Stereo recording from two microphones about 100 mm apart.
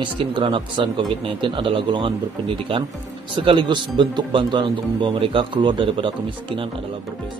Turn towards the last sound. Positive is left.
turn(degrees=-60)  # may be behind; listen again after turning